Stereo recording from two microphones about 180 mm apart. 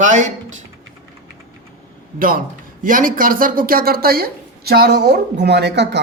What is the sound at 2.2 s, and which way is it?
A man's voice, 50° right (ahead or behind).